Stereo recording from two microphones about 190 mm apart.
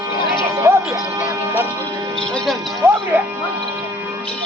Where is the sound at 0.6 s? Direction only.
15° right (ahead or behind).